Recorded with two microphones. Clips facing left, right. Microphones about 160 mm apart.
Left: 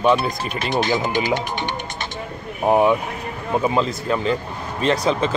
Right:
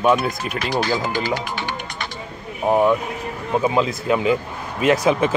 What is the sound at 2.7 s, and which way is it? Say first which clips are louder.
Speech: even; 10° left (ahead or behind).